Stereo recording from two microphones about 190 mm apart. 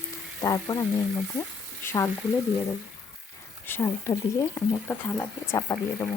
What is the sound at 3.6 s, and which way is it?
Speech, 10° left (ahead or behind).